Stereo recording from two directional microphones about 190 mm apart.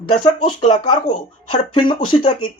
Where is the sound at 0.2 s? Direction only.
30° left (ahead or behind).